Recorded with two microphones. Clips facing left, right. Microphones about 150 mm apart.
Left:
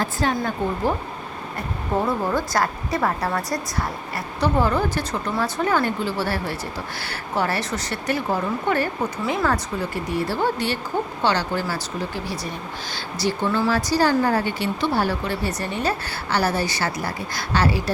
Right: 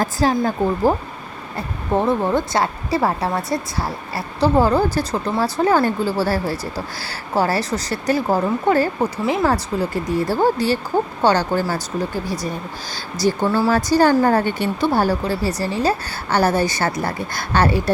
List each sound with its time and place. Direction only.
0.0 s a woman's voice: 35° right (ahead or behind)
1.5 s a woman's voice: 25° right (ahead or behind)
9.2 s speech: 25° right (ahead or behind)
9.5 s a woman's voice: 40° right (ahead or behind)